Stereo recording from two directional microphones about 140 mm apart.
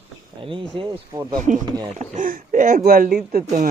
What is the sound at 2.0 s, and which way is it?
Speech, 70° right (ahead or behind).